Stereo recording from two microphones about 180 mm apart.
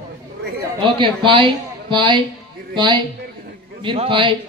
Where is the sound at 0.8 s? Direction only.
25° right (ahead or behind).